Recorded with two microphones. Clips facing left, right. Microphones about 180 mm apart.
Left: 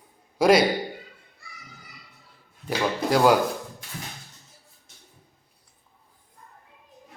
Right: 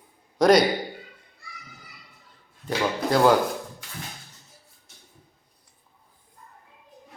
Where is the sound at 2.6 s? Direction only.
10° left (ahead or behind).